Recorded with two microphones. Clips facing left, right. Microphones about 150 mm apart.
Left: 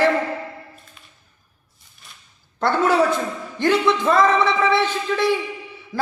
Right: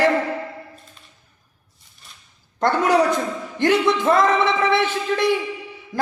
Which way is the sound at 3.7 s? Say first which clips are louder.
Even; 20° right (ahead or behind).